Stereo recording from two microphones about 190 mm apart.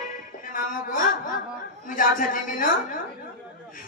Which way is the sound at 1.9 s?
45° left (ahead or behind).